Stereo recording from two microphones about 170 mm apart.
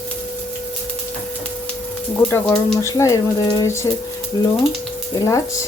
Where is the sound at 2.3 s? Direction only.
15° left (ahead or behind).